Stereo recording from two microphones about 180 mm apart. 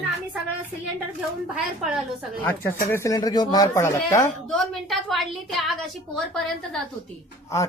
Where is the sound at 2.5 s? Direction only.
15° left (ahead or behind).